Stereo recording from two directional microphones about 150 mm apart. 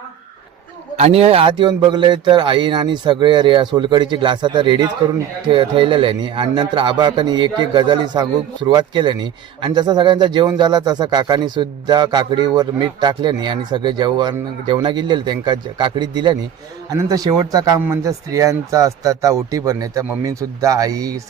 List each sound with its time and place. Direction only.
0.9 s speech: 45° right (ahead or behind); by 21.2 s 25° right (ahead or behind)